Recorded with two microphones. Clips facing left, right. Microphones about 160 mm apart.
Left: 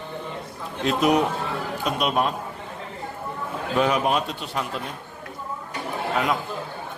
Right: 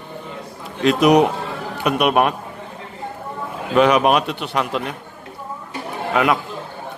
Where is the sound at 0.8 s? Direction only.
80° right.